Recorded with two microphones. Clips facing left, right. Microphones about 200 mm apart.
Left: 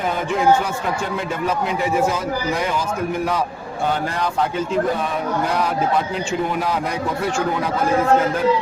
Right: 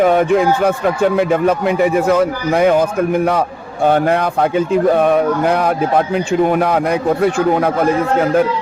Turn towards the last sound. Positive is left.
turn(degrees=-60)  # may be behind; listen again after turning